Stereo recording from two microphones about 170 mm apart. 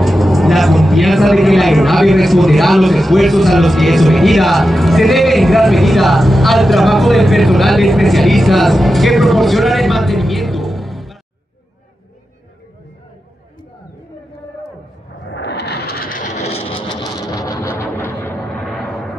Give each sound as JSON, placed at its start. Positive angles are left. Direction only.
{"t": 0.0, "sound": "speech", "side_deg": 0}
{"t": 15.2, "sound": "vehicle", "side_deg": 85}
{"t": 17.1, "sound": "a sound", "side_deg": 20}